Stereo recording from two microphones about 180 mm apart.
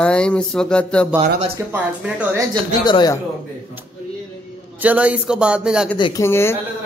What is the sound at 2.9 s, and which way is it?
Speech, 25° left (ahead or behind).